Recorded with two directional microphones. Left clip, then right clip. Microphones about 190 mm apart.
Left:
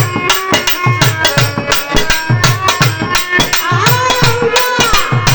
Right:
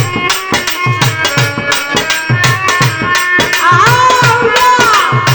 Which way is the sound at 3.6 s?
45° right (ahead or behind).